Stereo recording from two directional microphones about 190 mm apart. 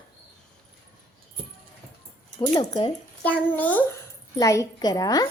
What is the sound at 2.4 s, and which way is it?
Speech, 25° left (ahead or behind).